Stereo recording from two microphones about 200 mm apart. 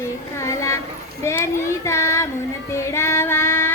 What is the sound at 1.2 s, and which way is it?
Speech, 15° left (ahead or behind).